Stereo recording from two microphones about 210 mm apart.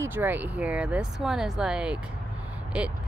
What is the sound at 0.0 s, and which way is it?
Speech, 10° right (ahead or behind).